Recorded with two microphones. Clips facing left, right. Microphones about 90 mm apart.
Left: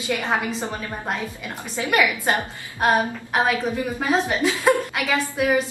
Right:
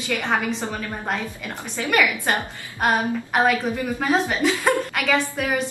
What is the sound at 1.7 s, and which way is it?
Speech, 15° left (ahead or behind).